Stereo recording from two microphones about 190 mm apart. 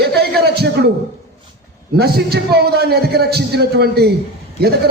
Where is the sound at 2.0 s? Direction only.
55° right (ahead or behind).